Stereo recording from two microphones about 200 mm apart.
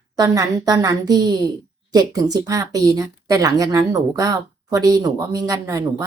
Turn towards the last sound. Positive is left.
turn(degrees=-15)  # may be behind; listen again after turning